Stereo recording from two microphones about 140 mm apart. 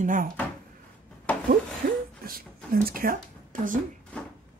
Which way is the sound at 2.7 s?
90° right.